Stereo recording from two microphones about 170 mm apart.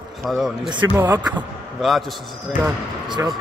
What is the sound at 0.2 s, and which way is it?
Speech, centre (ahead or behind).